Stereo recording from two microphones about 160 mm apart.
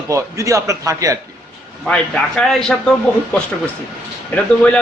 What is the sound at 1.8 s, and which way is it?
Speech, 5° left (ahead or behind).